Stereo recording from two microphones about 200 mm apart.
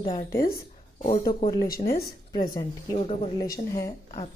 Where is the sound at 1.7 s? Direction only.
45° left (ahead or behind).